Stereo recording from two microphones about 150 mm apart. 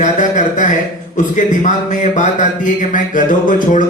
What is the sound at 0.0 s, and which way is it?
A man's voice, 55° left (ahead or behind).